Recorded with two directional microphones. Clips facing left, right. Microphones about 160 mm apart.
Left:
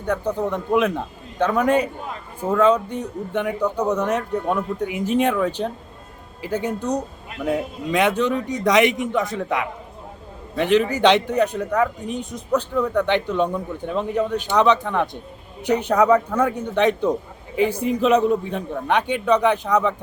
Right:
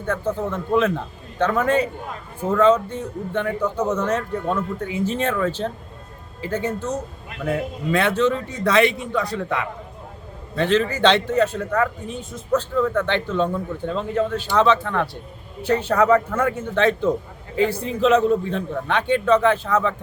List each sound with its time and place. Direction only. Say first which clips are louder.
0.0 s a man's voice: left 1 dB; 15° left (ahead or behind)